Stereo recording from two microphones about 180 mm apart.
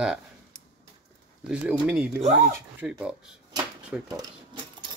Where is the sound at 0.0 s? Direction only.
5° right (ahead or behind).